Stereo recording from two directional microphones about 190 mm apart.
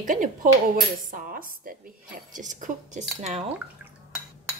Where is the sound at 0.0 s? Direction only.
45° right (ahead or behind).